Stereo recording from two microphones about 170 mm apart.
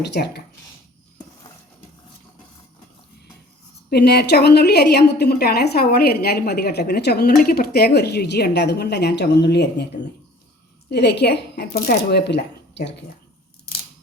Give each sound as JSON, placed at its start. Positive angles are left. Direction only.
{"t": 0.0, "sound": "a woman's voice", "side_deg": 75}
{"t": 3.8, "sound": "a woman's voice", "side_deg": 70}
{"t": 10.8, "sound": "a woman's voice", "side_deg": 80}